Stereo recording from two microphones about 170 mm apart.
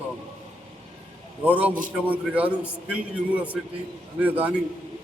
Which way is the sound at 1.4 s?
10° right (ahead or behind).